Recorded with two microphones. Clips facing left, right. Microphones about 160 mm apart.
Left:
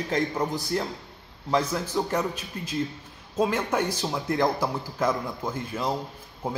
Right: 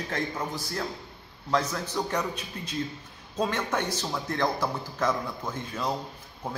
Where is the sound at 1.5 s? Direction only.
5° left (ahead or behind).